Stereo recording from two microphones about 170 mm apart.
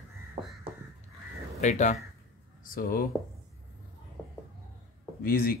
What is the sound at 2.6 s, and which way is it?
Speech, 55° left (ahead or behind).